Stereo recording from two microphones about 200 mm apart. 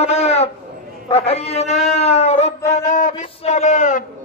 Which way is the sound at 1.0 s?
30° left (ahead or behind).